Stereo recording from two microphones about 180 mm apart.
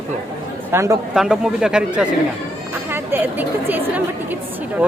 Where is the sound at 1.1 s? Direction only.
5° right (ahead or behind).